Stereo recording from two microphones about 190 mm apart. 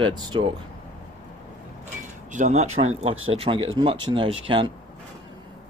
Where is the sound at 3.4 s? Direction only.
30° right (ahead or behind).